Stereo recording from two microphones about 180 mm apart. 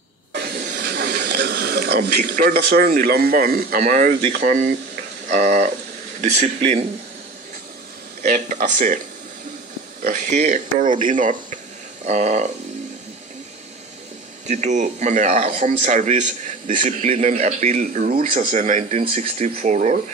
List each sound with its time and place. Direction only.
0.3 s speech: 60° right (ahead or behind); by 6.9 s 35° right (ahead or behind)
8.2 s speech: 45° right (ahead or behind)
10.0 s speech: 40° right (ahead or behind)
14.4 s speech: 40° right (ahead or behind)